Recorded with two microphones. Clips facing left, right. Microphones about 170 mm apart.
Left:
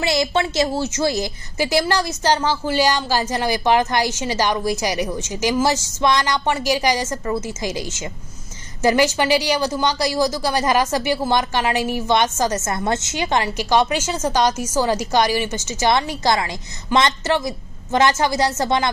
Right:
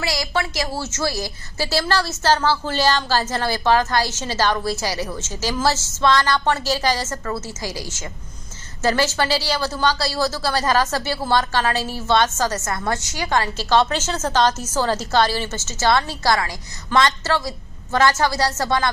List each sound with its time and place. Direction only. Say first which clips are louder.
0.0 s speech: left 4 dB; 25° left (ahead or behind)